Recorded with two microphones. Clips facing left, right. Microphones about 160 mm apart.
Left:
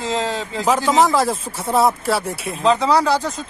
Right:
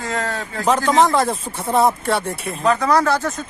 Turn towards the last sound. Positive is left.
turn(degrees=20)  # may be behind; listen again after turning